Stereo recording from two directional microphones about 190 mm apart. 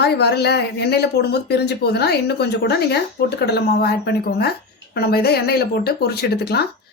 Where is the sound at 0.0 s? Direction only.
60° left (ahead or behind).